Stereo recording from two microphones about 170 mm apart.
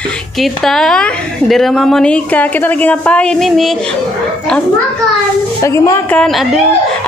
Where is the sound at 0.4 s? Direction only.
Centre (ahead or behind).